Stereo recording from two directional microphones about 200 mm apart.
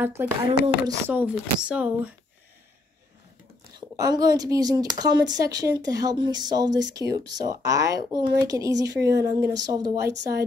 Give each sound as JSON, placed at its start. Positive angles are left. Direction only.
{"t": 0.0, "sound": "speech", "side_deg": -10}
{"t": 3.9, "sound": "speech", "side_deg": -20}